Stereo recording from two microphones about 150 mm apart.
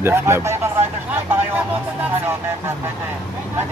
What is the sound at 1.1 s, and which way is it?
Vehicle, 10° right (ahead or behind).